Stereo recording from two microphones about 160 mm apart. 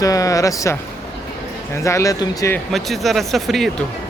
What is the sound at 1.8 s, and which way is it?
Speech, 20° left (ahead or behind).